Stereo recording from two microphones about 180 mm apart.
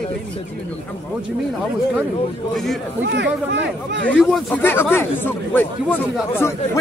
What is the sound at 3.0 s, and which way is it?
Speech, 80° right.